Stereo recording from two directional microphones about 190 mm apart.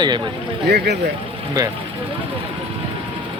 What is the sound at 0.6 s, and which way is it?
Speech, 55° right (ahead or behind).